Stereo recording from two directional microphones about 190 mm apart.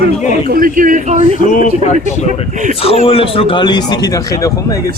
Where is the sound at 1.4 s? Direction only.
45° left (ahead or behind); by 4.9 s 15° left (ahead or behind).